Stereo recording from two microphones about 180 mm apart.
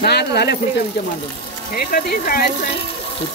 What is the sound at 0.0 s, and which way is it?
Speech, 65° left (ahead or behind).